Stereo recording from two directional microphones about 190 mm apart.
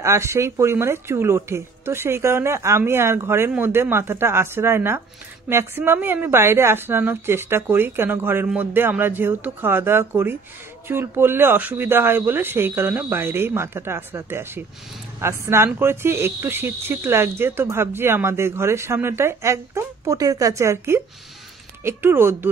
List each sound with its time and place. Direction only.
0.0 s speech: 15° right (ahead or behind)